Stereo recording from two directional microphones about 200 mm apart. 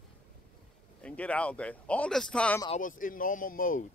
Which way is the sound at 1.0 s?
5° left (ahead or behind).